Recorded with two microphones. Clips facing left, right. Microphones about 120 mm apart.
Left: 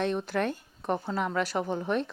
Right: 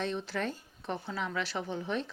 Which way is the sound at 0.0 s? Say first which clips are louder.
Left 6 dB; 55° left (ahead or behind).